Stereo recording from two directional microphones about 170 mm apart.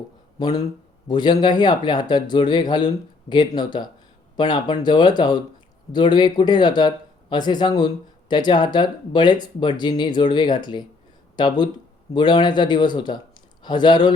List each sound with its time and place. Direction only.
0.3 s speech: 25° left (ahead or behind)